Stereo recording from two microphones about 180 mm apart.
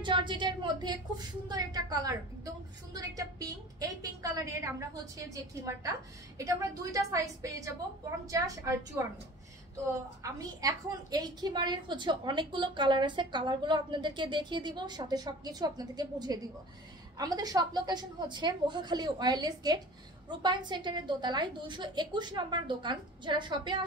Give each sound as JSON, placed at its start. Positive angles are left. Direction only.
{"t": 0.0, "sound": "a woman's voice", "side_deg": -25}
{"t": 10.2, "sound": "a woman's voice", "side_deg": -20}